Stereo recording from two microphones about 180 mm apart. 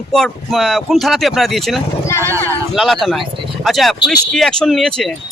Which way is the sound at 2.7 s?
Centre (ahead or behind).